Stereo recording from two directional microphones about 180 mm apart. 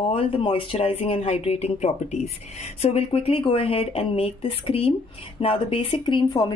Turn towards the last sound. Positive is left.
turn(degrees=25)  # may be behind; listen again after turning